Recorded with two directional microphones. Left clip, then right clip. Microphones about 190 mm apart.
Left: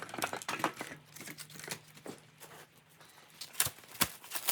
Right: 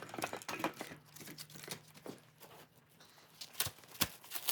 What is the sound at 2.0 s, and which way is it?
Walk, 5° left (ahead or behind).